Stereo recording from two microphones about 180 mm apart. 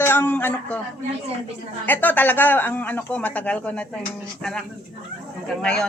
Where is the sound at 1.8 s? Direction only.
10° left (ahead or behind).